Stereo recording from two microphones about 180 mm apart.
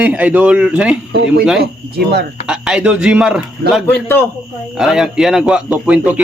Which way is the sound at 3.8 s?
10° left (ahead or behind).